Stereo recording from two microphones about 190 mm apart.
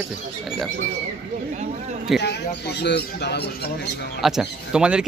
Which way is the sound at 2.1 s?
60° left (ahead or behind).